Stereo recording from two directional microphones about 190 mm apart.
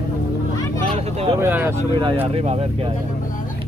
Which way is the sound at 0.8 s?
30° right (ahead or behind).